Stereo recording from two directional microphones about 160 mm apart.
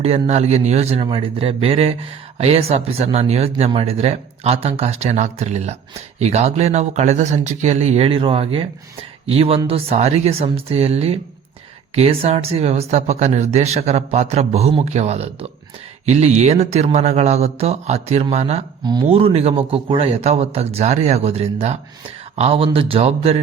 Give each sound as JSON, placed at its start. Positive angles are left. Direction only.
{"t": 0.0, "sound": "speech", "side_deg": -40}
{"t": 18.8, "sound": "speech", "side_deg": -25}
{"t": 19.0, "sound": "speech", "side_deg": -40}